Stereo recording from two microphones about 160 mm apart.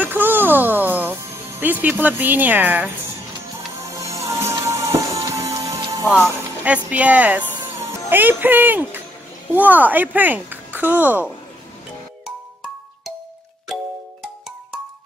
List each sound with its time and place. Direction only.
0.0 s music: 10° right (ahead or behind)
1.6 s speech: 10° right (ahead or behind)
3.5 s music: 20° right (ahead or behind)
6.2 s speech: 15° right (ahead or behind)